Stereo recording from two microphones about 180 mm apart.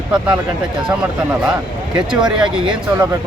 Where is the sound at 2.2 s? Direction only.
25° right (ahead or behind).